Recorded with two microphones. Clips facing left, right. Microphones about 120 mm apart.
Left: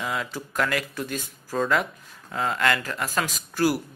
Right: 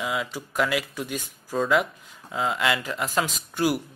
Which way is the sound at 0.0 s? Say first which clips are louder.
Right 1 dB; 10° right (ahead or behind).